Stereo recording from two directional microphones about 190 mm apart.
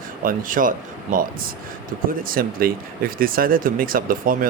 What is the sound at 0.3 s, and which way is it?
Speech, 45° right (ahead or behind).